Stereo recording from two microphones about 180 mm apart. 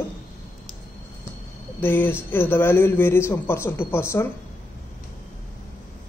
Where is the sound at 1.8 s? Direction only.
10° left (ahead or behind).